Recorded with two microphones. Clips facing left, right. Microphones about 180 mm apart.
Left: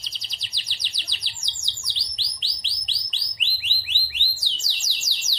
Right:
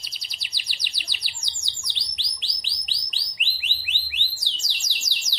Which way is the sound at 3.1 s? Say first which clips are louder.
Right 1 dB; 15° right (ahead or behind).